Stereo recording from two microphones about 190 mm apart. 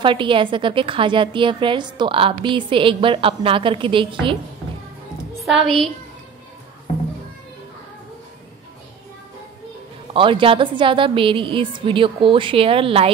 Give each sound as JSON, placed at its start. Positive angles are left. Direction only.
{"t": 0.0, "sound": "a woman's voice", "side_deg": -25}
{"t": 5.4, "sound": "a woman's voice", "side_deg": 0}
{"t": 6.9, "sound": "children playing", "side_deg": 35}
{"t": 10.1, "sound": "a woman's voice", "side_deg": -25}